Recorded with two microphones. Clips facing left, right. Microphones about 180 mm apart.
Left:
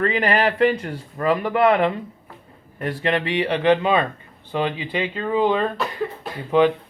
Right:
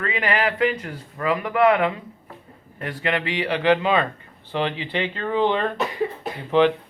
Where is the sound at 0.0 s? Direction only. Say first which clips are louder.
Left 4 dB; 40° left (ahead or behind); by 5.6 s 10° left (ahead or behind).